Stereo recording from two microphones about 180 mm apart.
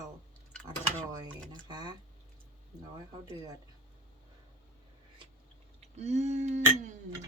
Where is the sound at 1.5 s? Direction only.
25° right (ahead or behind).